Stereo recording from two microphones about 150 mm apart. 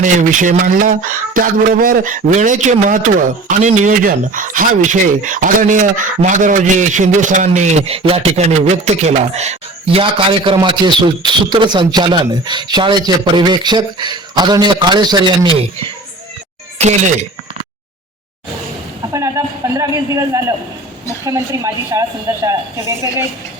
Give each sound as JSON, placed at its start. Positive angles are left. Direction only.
{"t": 0.0, "sound": "speech", "side_deg": -60}
{"t": 16.8, "sound": "speech", "side_deg": -45}
{"t": 19.1, "sound": "speech", "side_deg": -20}